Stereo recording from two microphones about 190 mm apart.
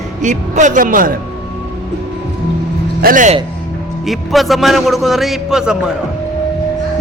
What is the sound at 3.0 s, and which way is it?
Speech, 40° right (ahead or behind).